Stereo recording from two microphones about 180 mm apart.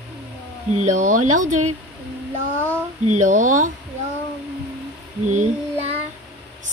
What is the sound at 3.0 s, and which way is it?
Speech, 40° right (ahead or behind).